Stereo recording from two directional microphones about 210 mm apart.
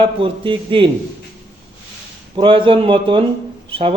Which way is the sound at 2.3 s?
25° right (ahead or behind).